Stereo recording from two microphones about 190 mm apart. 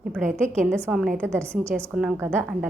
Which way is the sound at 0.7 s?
15° right (ahead or behind).